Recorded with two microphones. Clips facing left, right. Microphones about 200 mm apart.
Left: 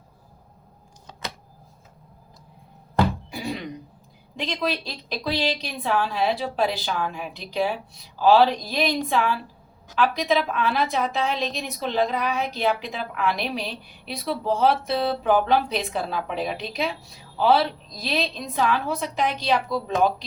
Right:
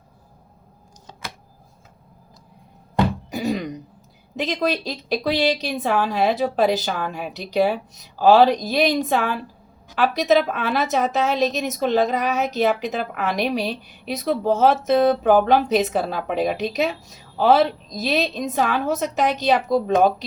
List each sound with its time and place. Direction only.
3.2 s thunk: 45° right (ahead or behind)
4.4 s a woman's voice: 45° right (ahead or behind)